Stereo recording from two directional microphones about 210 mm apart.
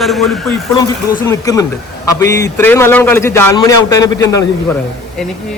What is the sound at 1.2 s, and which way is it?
A man's voice, 15° left (ahead or behind).